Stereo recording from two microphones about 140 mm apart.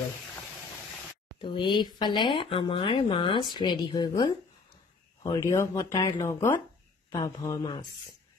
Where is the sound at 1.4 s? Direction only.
35° left (ahead or behind).